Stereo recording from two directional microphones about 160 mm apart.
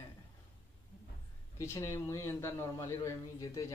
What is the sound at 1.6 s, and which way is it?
A man's voice, 20° left (ahead or behind).